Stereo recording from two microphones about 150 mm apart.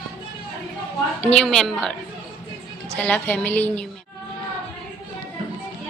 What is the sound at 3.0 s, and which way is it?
Speech, 10° left (ahead or behind).